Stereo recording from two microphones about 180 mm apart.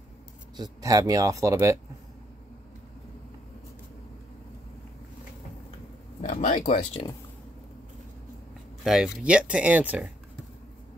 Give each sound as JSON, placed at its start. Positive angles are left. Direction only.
{"t": 0.6, "sound": "speech", "side_deg": -20}
{"t": 6.2, "sound": "speech", "side_deg": 45}
{"t": 8.8, "sound": "speech", "side_deg": -5}